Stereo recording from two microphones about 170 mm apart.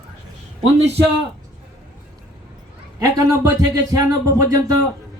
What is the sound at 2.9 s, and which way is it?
Speech, 20° right (ahead or behind).